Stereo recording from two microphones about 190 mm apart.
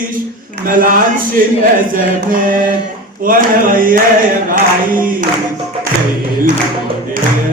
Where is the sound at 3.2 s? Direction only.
45° right (ahead or behind).